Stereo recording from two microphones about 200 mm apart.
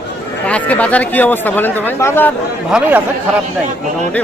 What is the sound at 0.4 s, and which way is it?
Speech, 5° left (ahead or behind).